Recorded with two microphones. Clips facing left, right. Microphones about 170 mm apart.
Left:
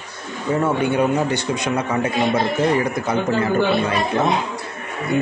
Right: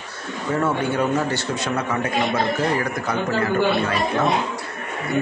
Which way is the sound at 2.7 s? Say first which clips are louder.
Left 3 dB; 20° left (ahead or behind).